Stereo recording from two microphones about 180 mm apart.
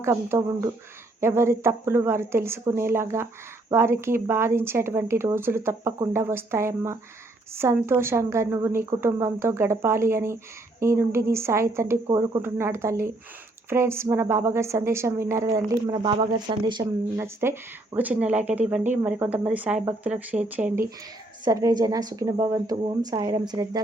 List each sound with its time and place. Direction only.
0.0 s speech: 15° right (ahead or behind)
17.2 s speech: 15° right (ahead or behind)
21.4 s a woman's voice: 20° right (ahead or behind)